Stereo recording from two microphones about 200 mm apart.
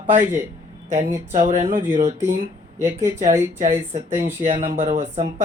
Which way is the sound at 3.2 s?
40° right (ahead or behind).